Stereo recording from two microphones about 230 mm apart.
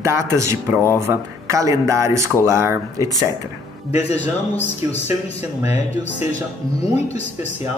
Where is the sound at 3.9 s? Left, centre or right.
Left.